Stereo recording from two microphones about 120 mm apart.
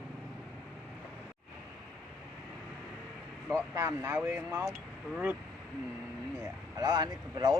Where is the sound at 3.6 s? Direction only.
25° right (ahead or behind).